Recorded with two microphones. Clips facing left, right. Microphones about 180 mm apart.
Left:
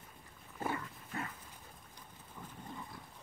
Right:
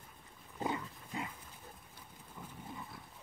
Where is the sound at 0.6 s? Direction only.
15° right (ahead or behind).